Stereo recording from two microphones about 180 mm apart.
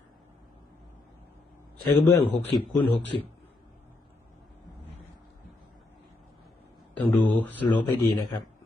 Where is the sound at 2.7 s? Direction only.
10° left (ahead or behind).